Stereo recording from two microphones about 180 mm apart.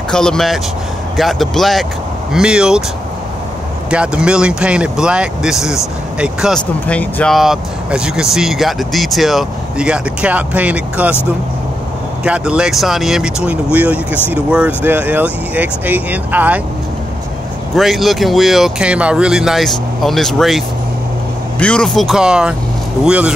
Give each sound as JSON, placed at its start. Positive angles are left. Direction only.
{"t": 0.1, "sound": "speech", "side_deg": 5}
{"t": 3.9, "sound": "speech", "side_deg": -5}
{"t": 6.9, "sound": "speech", "side_deg": 10}
{"t": 12.2, "sound": "speech", "side_deg": -5}
{"t": 17.7, "sound": "speech", "side_deg": 0}